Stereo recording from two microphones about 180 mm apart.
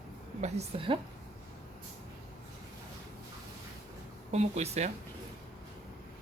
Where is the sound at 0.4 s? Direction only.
35° right (ahead or behind).